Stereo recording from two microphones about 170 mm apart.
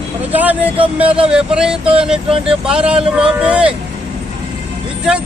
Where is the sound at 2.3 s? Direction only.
30° right (ahead or behind).